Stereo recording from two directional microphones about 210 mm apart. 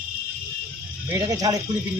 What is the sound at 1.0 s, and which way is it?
Speech, 15° right (ahead or behind).